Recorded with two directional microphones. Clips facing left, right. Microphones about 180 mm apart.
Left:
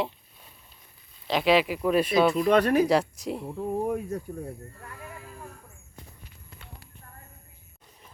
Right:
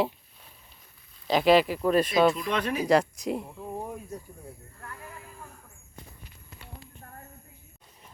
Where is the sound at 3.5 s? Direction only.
65° left (ahead or behind).